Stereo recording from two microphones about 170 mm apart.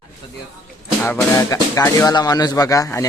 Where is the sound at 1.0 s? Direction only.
15° left (ahead or behind).